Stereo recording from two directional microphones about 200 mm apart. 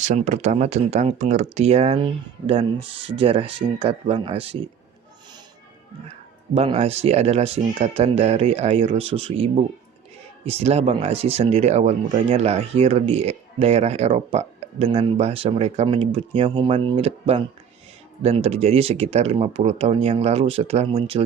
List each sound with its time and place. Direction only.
0.0 s speech: 35° right (ahead or behind)
6.5 s speech: 30° right (ahead or behind)